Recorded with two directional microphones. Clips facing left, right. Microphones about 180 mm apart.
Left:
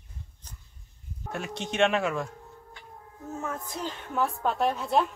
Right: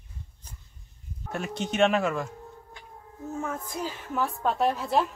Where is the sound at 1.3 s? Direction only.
Centre (ahead or behind).